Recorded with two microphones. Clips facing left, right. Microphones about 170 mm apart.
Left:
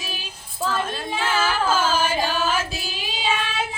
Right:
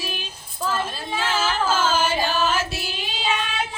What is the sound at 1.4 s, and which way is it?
Music, 10° left (ahead or behind).